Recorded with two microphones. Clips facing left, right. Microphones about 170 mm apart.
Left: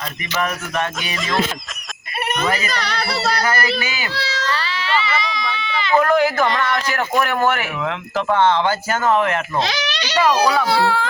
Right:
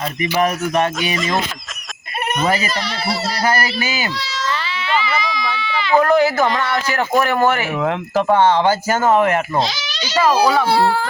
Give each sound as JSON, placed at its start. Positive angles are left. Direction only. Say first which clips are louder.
{"t": 1.0, "sound": "a child's voice", "louder": "right 6 dB", "side_deg": 0}
{"t": 2.4, "sound": "speech", "louder": "right 3 dB", "side_deg": -35}
{"t": 5.1, "sound": "speech", "louder": "right 2 dB", "side_deg": -5}
{"t": 7.8, "sound": "speech", "louder": "right 5 dB", "side_deg": -40}
{"t": 8.3, "sound": "speech", "louder": "right 2 dB", "side_deg": -10}
{"t": 9.6, "sound": "a child's voice", "louder": "left 2 dB", "side_deg": 65}
{"t": 10.3, "sound": "a child's voice", "louder": "right 2 dB", "side_deg": -5}
{"t": 10.7, "sound": "speech", "louder": "right 2 dB", "side_deg": -40}